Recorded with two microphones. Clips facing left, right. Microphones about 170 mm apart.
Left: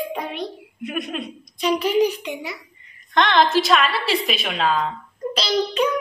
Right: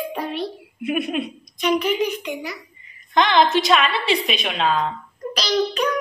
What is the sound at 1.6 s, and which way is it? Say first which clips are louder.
Speech: left 2 dB; 35° left (ahead or behind).